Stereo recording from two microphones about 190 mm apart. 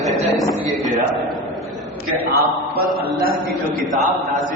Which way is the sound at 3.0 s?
50° right (ahead or behind).